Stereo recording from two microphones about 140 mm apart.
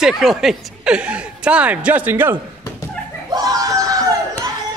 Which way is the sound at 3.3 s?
25° right (ahead or behind).